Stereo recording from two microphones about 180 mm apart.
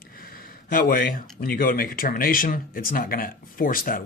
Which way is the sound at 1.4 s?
55° left (ahead or behind).